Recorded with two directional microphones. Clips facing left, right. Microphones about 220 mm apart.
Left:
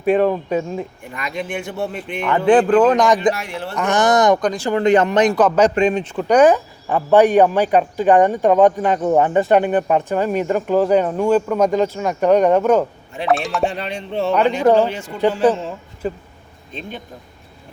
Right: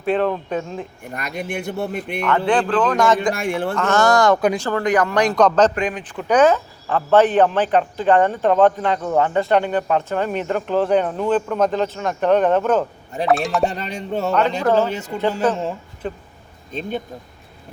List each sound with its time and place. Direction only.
0.0 s speech: 10° left (ahead or behind)
1.1 s speech: 45° right (ahead or behind)
2.2 s speech: 20° left (ahead or behind)
3.3 s speech: 50° right (ahead or behind)
3.8 s speech: 15° left (ahead or behind)
4.4 s speech: 10° right (ahead or behind)
4.8 s speech: 25° left (ahead or behind)
5.3 s speech: 10° left (ahead or behind)
5.7 s speech: 25° left (ahead or behind)
6.3 s speech: 15° left (ahead or behind)
13.2 s speech: centre (ahead or behind)
13.7 s music: 40° right (ahead or behind)
16.0 s speech: 5° left (ahead or behind)